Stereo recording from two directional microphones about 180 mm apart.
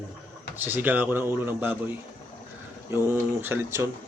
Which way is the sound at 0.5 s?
10° right (ahead or behind).